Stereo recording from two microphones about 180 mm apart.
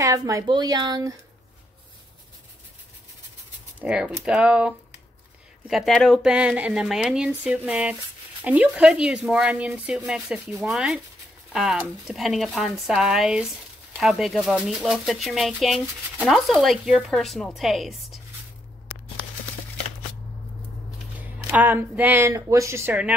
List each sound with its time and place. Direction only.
0.0 s speech: 20° right (ahead or behind)
3.8 s speech: 5° right (ahead or behind)
21.4 s speech: 10° right (ahead or behind)